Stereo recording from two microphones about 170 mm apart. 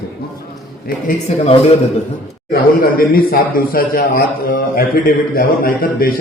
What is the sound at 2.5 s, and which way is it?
Speech, 60° left (ahead or behind).